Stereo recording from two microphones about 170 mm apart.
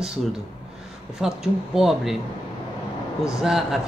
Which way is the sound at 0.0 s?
Centre (ahead or behind).